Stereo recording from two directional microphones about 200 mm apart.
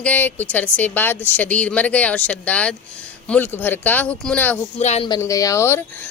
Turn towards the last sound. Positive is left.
turn(degrees=10)  # may be behind; listen again after turning